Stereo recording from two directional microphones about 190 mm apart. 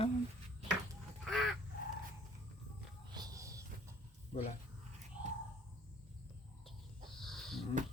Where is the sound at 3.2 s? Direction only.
15° right (ahead or behind).